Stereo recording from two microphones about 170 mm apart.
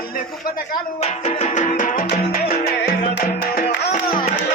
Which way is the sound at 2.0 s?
65° left (ahead or behind).